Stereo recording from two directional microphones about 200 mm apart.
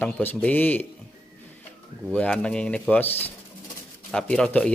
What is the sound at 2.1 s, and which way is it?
A man's voice, 5° left (ahead or behind).